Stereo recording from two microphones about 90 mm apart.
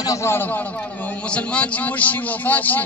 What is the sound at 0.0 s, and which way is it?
Speech, 40° left (ahead or behind).